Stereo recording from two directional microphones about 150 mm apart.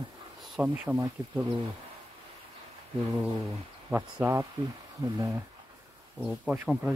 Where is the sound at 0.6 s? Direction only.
10° right (ahead or behind).